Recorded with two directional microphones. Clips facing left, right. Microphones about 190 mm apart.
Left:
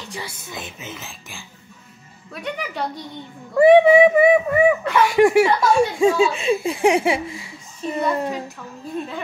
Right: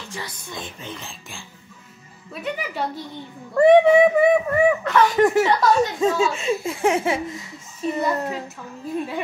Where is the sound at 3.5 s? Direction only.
5° left (ahead or behind).